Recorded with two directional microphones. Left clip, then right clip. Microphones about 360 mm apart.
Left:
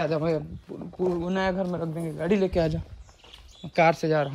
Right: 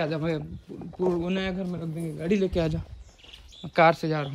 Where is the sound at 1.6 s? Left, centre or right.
Left.